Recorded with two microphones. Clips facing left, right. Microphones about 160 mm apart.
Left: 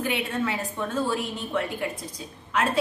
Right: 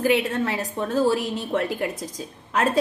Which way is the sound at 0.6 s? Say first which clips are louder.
Right 5 dB; 40° right (ahead or behind).